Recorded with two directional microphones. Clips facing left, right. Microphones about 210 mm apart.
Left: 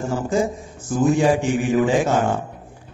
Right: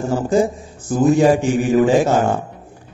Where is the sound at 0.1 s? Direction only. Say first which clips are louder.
Right 5 dB; 35° right (ahead or behind).